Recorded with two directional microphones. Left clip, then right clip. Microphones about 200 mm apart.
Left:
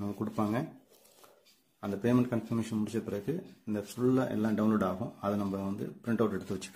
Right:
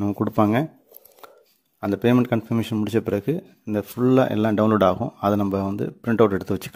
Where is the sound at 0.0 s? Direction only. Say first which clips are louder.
Right 14 dB; 45° right (ahead or behind).